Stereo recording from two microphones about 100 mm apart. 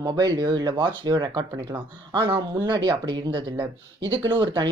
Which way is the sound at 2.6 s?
45° right (ahead or behind).